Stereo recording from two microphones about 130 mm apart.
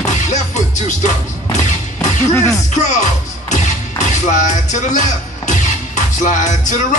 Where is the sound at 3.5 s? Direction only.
70° left (ahead or behind).